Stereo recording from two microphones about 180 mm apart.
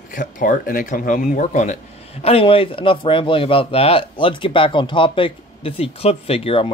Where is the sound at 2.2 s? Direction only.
30° left (ahead or behind).